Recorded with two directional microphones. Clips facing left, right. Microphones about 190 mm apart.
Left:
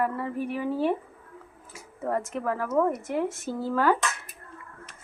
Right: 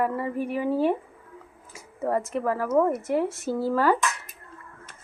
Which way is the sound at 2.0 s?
5° right (ahead or behind).